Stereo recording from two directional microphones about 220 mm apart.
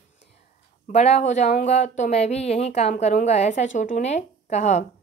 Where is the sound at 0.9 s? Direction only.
30° left (ahead or behind).